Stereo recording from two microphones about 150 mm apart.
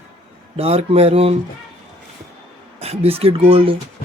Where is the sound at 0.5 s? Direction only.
45° right (ahead or behind).